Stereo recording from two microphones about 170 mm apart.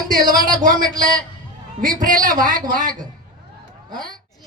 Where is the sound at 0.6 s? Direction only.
50° right (ahead or behind).